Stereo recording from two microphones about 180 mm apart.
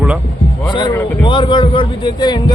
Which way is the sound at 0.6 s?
25° left (ahead or behind).